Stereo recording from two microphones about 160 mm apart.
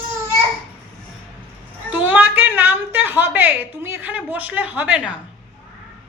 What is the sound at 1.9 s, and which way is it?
A woman's voice, 10° right (ahead or behind).